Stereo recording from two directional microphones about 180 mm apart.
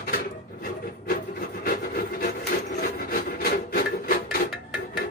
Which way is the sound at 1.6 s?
55° left (ahead or behind).